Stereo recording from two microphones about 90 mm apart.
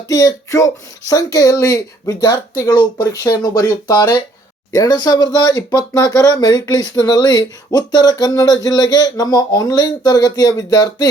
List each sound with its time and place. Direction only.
0.1 s speech: 40° left (ahead or behind)